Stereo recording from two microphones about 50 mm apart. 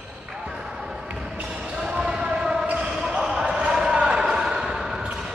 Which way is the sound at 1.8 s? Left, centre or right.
Centre.